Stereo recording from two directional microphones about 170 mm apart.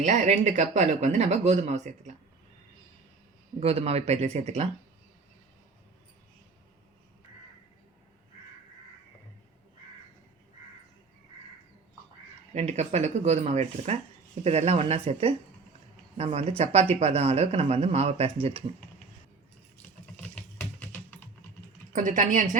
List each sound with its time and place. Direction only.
0.0 s speech: 45° right (ahead or behind)
3.6 s speech: 35° right (ahead or behind)
12.5 s speech: 40° right (ahead or behind)
20.3 s typing: 10° left (ahead or behind)
21.9 s speech: 50° right (ahead or behind)